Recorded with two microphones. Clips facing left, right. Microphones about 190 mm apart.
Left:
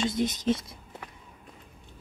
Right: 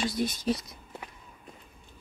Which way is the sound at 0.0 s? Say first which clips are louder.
Left 2 dB; 20° left (ahead or behind).